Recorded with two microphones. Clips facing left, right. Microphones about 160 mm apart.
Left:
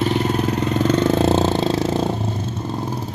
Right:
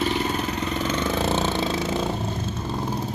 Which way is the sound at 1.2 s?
35° left (ahead or behind).